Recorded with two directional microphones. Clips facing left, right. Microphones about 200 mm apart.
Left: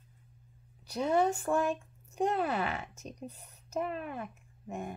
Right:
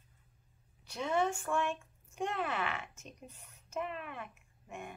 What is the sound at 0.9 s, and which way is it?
Speech, 35° left (ahead or behind).